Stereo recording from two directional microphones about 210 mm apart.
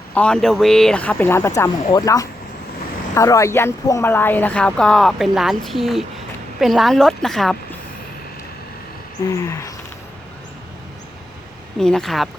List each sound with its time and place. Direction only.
0.1 s a woman's voice: 5° left (ahead or behind)
9.2 s speech: 15° left (ahead or behind)
11.8 s a woman's voice: centre (ahead or behind)